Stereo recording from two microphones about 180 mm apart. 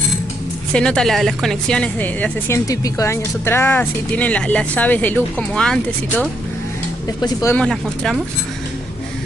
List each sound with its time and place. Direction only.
0.7 s a woman's voice: 5° left (ahead or behind)
7.2 s speech: 20° left (ahead or behind)
7.5 s speech: 5° left (ahead or behind)